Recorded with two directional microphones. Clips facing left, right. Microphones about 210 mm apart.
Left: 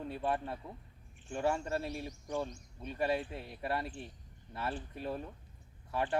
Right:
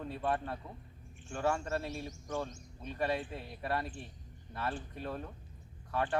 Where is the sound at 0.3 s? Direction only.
25° left (ahead or behind).